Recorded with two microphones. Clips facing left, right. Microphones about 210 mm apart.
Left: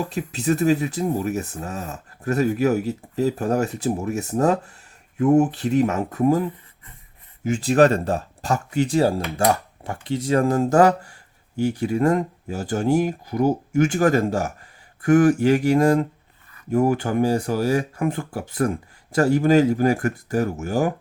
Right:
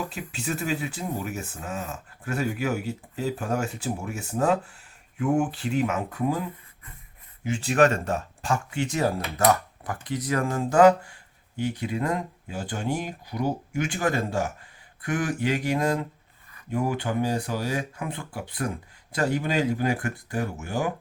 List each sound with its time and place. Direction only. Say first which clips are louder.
0.0 s speech: left 7 dB; 40° left (ahead or behind)
7.4 s speech: left 5 dB; 40° left (ahead or behind)